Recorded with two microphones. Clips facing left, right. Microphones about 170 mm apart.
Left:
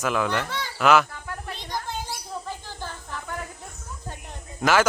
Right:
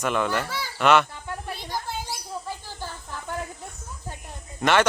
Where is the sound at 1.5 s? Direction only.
10° right (ahead or behind).